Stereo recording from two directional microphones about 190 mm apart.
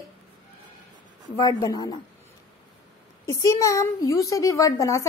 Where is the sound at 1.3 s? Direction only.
20° left (ahead or behind).